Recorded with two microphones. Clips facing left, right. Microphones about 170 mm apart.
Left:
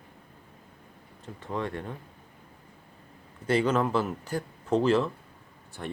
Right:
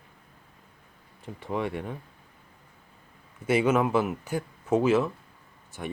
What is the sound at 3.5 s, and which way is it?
Speech, 10° right (ahead or behind).